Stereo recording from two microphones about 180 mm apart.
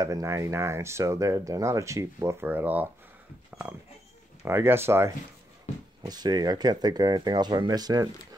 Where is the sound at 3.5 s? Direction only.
10° right (ahead or behind).